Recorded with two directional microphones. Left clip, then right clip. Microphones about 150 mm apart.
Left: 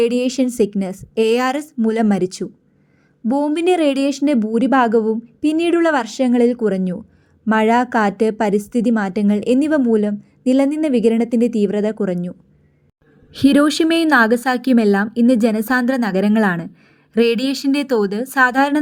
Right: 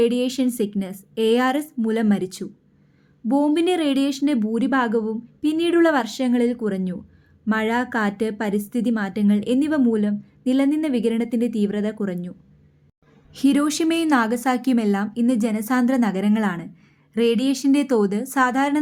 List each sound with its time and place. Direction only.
0.0 s a woman's voice: 35° left (ahead or behind)
13.3 s a woman's voice: 30° left (ahead or behind)